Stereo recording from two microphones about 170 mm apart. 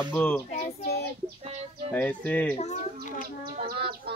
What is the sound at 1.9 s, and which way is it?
Speech, 10° left (ahead or behind).